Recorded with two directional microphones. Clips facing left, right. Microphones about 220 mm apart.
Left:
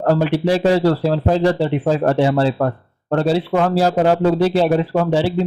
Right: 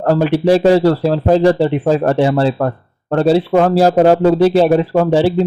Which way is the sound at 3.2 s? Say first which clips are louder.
Right 7 dB; 40° right (ahead or behind).